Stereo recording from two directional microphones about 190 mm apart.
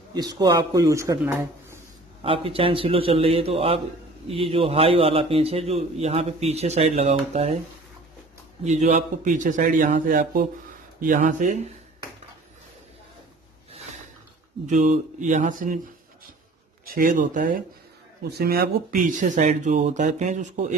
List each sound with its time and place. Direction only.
0.1 s speech: 20° right (ahead or behind)
2.2 s a man's voice: 30° right (ahead or behind)
8.6 s a man's voice: 40° right (ahead or behind)
14.7 s a man's voice: 40° right (ahead or behind)
16.8 s a man's voice: 50° right (ahead or behind)